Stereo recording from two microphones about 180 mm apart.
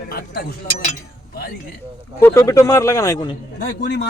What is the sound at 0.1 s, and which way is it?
Speech, 55° left (ahead or behind).